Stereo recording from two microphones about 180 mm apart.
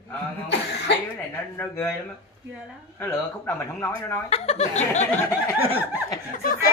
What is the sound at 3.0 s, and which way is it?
Speech, 15° left (ahead or behind).